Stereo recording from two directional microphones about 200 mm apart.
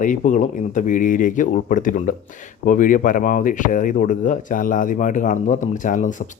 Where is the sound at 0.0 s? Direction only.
40° left (ahead or behind).